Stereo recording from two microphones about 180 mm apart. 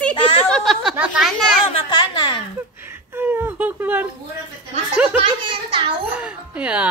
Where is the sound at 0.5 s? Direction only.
Centre (ahead or behind).